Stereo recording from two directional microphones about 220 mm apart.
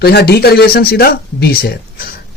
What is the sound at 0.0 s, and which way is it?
Speech, 45° left (ahead or behind).